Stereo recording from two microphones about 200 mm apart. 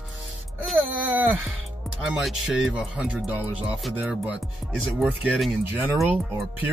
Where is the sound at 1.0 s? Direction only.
10° right (ahead or behind).